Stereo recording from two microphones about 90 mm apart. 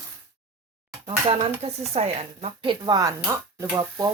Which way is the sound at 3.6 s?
35° right (ahead or behind).